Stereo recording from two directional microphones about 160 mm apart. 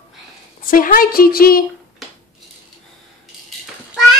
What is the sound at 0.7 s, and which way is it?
Speech, 60° left (ahead or behind).